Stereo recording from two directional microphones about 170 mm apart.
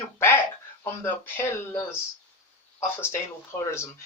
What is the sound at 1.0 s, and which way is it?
Speech, 15° left (ahead or behind).